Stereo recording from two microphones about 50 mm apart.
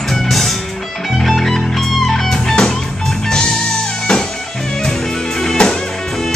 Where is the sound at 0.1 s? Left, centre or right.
Centre.